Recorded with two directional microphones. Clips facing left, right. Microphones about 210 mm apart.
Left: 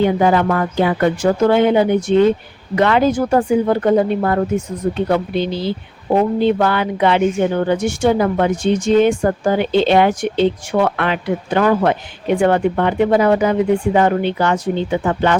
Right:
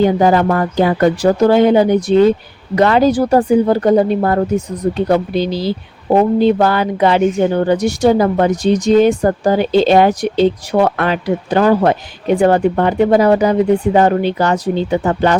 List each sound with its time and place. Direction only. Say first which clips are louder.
0.0 s speech: right 3 dB; 40° right (ahead or behind)